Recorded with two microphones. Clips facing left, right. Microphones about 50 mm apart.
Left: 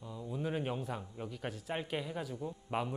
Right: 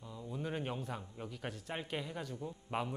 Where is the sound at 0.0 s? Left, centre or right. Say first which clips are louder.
Left 3 dB; centre.